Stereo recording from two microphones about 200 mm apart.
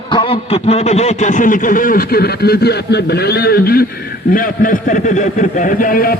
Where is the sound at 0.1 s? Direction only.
25° left (ahead or behind).